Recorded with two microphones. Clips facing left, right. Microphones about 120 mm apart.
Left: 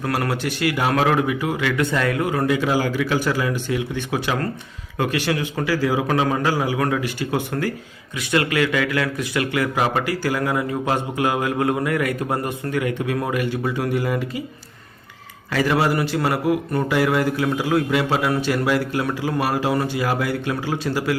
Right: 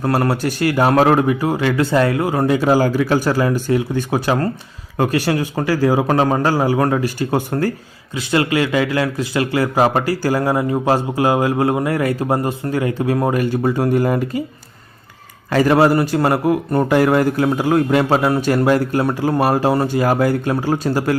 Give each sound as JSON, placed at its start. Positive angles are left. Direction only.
{"t": 0.0, "sound": "a man's voice", "side_deg": -35}
{"t": 8.1, "sound": "a man's voice", "side_deg": -30}
{"t": 15.4, "sound": "a man's voice", "side_deg": -45}